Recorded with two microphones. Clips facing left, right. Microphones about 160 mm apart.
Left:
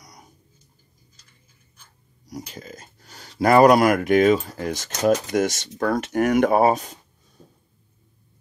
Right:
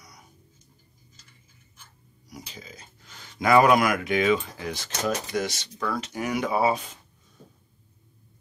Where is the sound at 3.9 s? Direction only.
45° left (ahead or behind).